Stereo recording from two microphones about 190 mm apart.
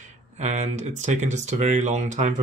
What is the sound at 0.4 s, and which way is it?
Speech, 35° right (ahead or behind).